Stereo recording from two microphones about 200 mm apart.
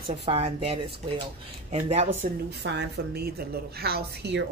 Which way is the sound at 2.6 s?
60° right (ahead or behind).